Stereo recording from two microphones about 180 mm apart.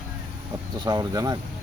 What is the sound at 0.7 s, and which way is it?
Speech, 25° right (ahead or behind).